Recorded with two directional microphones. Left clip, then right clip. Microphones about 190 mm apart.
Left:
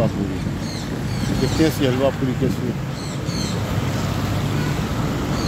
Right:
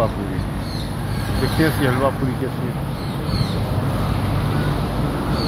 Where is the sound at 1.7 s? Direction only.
35° left (ahead or behind).